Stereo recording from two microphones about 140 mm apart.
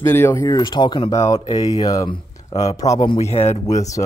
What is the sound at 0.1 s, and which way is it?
Speech, 20° left (ahead or behind).